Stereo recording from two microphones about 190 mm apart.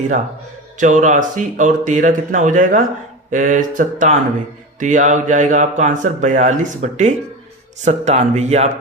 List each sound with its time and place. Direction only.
0.8 s speech: 40° right (ahead or behind)